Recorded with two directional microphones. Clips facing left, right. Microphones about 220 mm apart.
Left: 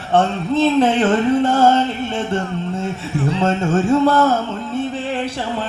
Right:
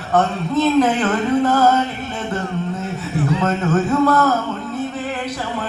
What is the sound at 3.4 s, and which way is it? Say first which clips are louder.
Music: left 3 dB; 30° left (ahead or behind).